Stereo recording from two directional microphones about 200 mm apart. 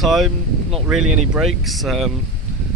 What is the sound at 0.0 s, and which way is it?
Speech, centre (ahead or behind).